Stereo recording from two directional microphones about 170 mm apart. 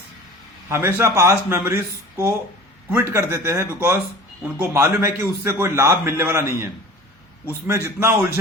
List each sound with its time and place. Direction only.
0.7 s a man's voice: 15° right (ahead or behind)
7.7 s a man's voice: 15° right (ahead or behind)